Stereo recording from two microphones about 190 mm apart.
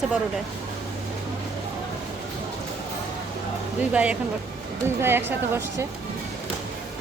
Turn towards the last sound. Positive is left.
turn(degrees=-10)  # may be behind; listen again after turning